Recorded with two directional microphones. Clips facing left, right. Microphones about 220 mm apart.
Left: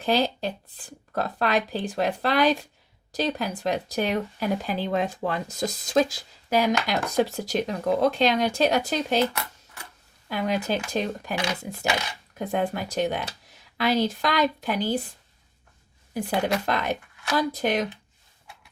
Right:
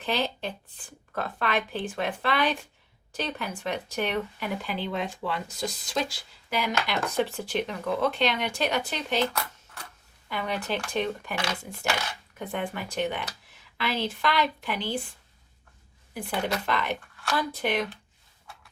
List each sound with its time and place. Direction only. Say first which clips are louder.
0.0 s speech: left 5 dB; 40° left (ahead or behind)
10.2 s speech: left 5 dB; 40° left (ahead or behind)
16.6 s speech: left 3 dB; 40° left (ahead or behind)